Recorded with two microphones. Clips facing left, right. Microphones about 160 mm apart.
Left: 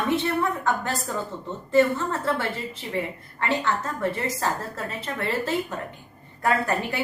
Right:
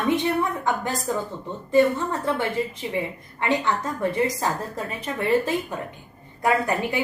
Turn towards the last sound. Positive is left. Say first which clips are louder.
# right 2 dB
turn(degrees=-15)  # may be behind; listen again after turning